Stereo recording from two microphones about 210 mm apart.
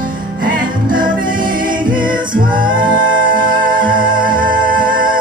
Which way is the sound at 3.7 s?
20° right (ahead or behind).